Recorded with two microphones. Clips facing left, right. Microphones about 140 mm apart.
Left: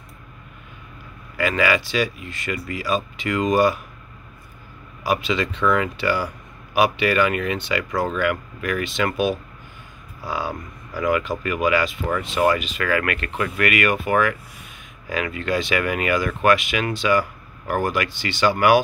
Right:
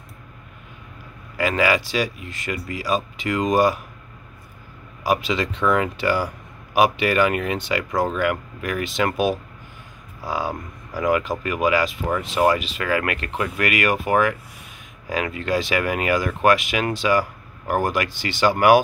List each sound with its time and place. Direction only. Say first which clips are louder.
1.4 s speech: even; 35° right (ahead or behind)
5.0 s speech: even; 40° right (ahead or behind)